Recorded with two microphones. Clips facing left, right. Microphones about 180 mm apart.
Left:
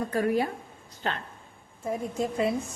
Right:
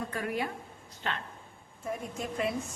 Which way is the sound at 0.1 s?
35° left (ahead or behind).